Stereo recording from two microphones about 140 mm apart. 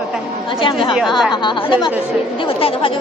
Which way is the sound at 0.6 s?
35° left (ahead or behind).